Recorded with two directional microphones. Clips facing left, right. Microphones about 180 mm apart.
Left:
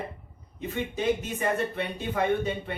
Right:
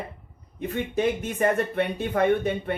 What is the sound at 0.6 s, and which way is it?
Speech, 55° right (ahead or behind).